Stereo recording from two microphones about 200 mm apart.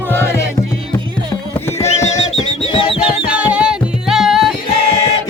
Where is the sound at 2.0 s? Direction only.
35° left (ahead or behind).